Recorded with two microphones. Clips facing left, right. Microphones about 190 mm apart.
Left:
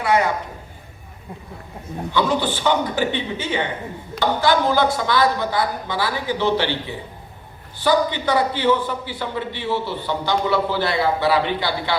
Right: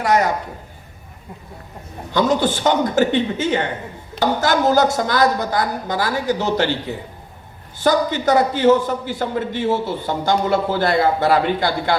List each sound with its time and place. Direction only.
0.0 s a woman's voice: 40° right (ahead or behind)
2.1 s a man's voice: 45° right (ahead or behind)